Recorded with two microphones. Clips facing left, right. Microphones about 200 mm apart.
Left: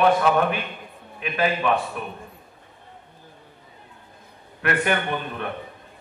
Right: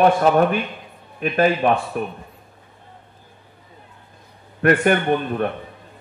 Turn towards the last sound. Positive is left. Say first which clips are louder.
# right 8 dB
turn(degrees=-45)  # may be behind; listen again after turning